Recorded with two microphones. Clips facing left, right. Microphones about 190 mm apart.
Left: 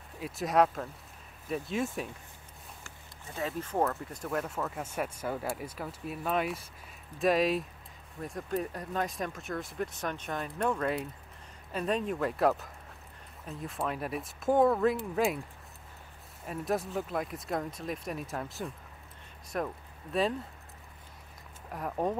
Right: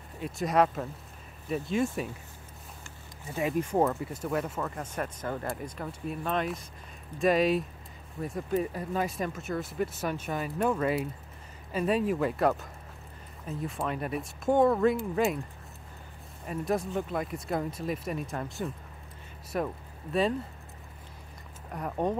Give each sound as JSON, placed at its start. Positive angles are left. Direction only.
{"t": 0.2, "sound": "speech", "side_deg": 0}
{"t": 3.3, "sound": "speech", "side_deg": -15}
{"t": 16.4, "sound": "speech", "side_deg": 0}
{"t": 21.6, "sound": "speech", "side_deg": 0}